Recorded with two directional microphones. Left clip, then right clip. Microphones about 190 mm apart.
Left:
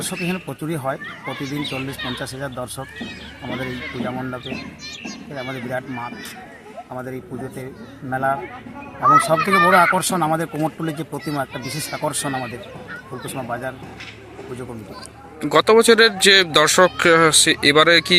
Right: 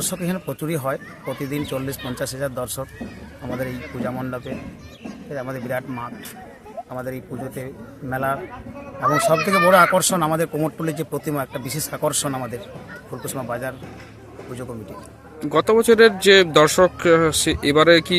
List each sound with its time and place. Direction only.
0.1 s speech: 30° right (ahead or behind)
9.5 s a child's voice: 45° right (ahead or behind)
9.7 s speech: 20° right (ahead or behind)
15.4 s speech: centre (ahead or behind)